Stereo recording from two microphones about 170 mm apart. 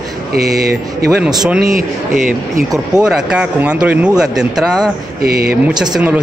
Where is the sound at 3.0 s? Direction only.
5° right (ahead or behind).